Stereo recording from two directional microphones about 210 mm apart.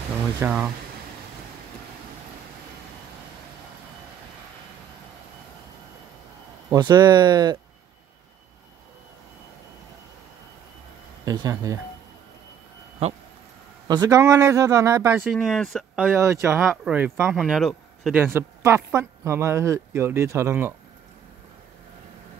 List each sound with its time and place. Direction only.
0.4 s speech: 10° right (ahead or behind)
6.7 s speech: 20° right (ahead or behind)
11.2 s speech: 15° right (ahead or behind)
13.8 s speech: 20° right (ahead or behind)
15.1 s speech: centre (ahead or behind)
16.1 s speech: 15° right (ahead or behind)
16.6 s speech: centre (ahead or behind)
18.2 s speech: 10° right (ahead or behind)